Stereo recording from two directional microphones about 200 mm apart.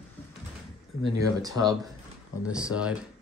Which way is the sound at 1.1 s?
20° right (ahead or behind).